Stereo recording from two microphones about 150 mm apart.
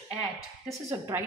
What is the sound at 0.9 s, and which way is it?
Speech, 15° right (ahead or behind).